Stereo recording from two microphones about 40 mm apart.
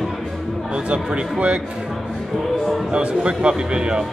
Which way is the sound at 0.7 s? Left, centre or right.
Right.